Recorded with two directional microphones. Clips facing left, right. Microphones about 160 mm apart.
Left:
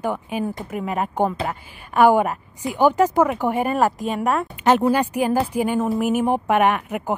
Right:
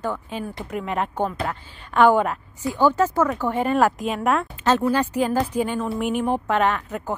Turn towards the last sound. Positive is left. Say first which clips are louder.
# left 3 dB
turn(degrees=10)  # may be behind; listen again after turning